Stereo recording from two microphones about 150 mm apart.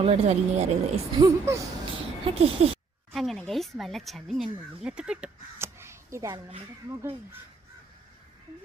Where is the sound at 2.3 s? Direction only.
40° right (ahead or behind).